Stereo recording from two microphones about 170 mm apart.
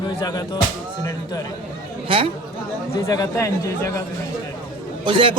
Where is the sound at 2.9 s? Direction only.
20° left (ahead or behind).